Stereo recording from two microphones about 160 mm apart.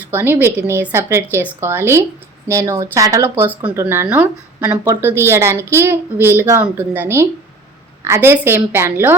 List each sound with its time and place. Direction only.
0.1 s a woman's voice: 10° right (ahead or behind)